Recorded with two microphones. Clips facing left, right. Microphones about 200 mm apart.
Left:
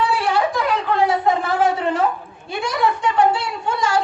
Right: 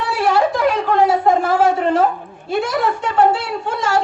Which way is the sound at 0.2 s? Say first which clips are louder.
Right 4 dB; 45° right (ahead or behind).